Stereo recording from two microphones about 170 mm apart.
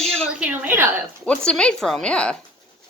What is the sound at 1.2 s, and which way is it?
A woman's voice, 5° left (ahead or behind).